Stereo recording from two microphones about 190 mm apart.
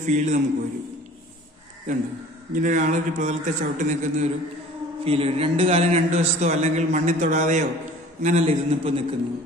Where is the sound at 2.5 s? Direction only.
40° right (ahead or behind).